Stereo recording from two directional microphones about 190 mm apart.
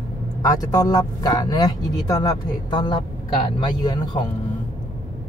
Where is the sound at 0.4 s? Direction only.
20° left (ahead or behind).